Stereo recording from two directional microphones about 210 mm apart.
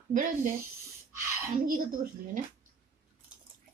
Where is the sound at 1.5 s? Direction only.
40° right (ahead or behind).